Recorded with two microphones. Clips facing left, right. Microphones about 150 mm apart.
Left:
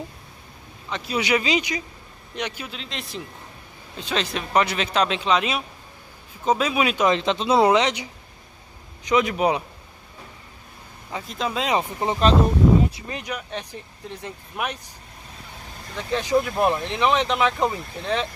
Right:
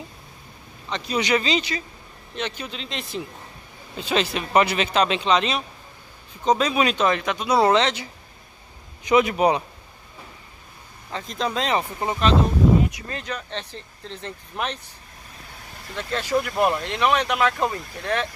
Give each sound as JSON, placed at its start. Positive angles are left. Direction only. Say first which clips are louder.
{"t": 0.8, "sound": "speech", "louder": "right 1 dB", "side_deg": 5}
{"t": 7.1, "sound": "speech", "louder": "left 2 dB", "side_deg": 25}
{"t": 7.6, "sound": "speech", "louder": "left 1 dB", "side_deg": 15}
{"t": 9.0, "sound": "speech", "louder": "right 2 dB", "side_deg": -5}
{"t": 11.1, "sound": "speech", "louder": "right 1 dB", "side_deg": 5}
{"t": 11.7, "sound": "speech", "louder": "left 1 dB", "side_deg": 20}
{"t": 16.0, "sound": "speech", "louder": "left 2 dB", "side_deg": 15}
{"t": 16.3, "sound": "speech", "louder": "left 1 dB", "side_deg": 0}
{"t": 16.7, "sound": "speech", "louder": "even", "side_deg": 20}